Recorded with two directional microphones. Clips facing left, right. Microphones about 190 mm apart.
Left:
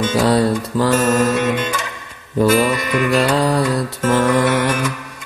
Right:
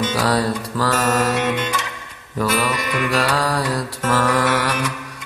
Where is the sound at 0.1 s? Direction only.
25° left (ahead or behind).